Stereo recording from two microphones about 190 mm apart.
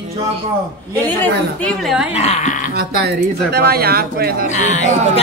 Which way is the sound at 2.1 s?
35° left (ahead or behind).